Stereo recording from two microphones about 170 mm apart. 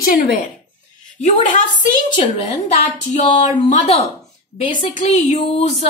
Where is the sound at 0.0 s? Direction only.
60° left (ahead or behind).